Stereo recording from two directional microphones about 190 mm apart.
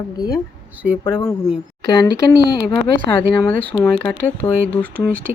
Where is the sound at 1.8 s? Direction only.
55° right (ahead or behind).